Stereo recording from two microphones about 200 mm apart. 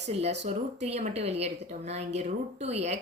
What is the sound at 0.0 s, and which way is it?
Speech, 35° right (ahead or behind).